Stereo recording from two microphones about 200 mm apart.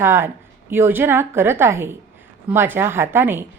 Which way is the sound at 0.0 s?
10° right (ahead or behind).